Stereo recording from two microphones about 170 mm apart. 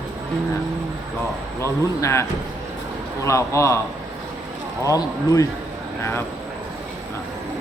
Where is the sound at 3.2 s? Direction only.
15° left (ahead or behind).